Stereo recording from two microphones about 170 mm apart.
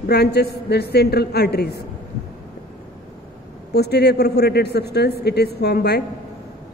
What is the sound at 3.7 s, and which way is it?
A man's voice, 75° left (ahead or behind).